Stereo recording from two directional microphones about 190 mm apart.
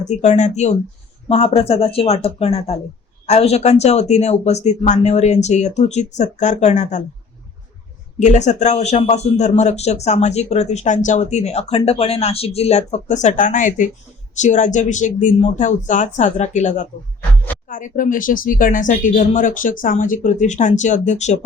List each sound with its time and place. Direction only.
0.0 s speech: 40° left (ahead or behind)
8.2 s speech: 40° left (ahead or behind)
17.2 s a sound: 10° left (ahead or behind)
17.7 s speech: 45° left (ahead or behind)